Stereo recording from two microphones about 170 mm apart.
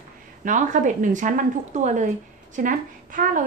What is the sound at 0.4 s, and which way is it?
A woman's voice, 50° right (ahead or behind).